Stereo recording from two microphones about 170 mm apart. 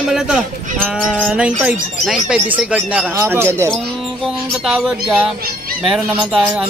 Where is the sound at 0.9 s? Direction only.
5° right (ahead or behind).